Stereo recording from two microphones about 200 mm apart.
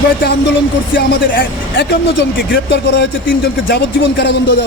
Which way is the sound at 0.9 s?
55° left (ahead or behind).